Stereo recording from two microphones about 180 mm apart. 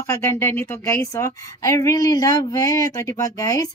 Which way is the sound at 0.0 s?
15° left (ahead or behind).